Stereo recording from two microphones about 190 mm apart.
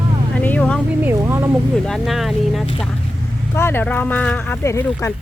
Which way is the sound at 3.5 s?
10° left (ahead or behind).